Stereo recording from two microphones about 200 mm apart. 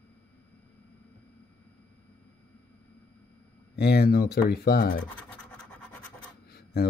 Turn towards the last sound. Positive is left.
turn(degrees=50)  # may be behind; listen again after turning